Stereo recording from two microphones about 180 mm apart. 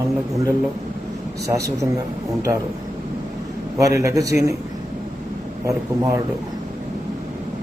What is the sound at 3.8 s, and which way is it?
Speech, 20° right (ahead or behind).